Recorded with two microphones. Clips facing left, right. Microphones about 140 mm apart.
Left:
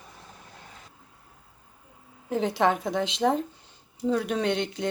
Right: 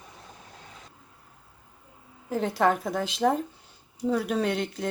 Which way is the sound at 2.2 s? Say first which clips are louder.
Even; centre (ahead or behind).